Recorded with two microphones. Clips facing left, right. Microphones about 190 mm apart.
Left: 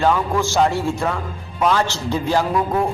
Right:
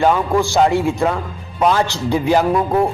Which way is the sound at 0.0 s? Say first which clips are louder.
Right 3 dB; 15° right (ahead or behind).